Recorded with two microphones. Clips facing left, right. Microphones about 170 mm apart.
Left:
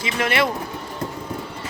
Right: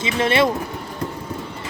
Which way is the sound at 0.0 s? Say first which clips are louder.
Right 3 dB; 25° right (ahead or behind).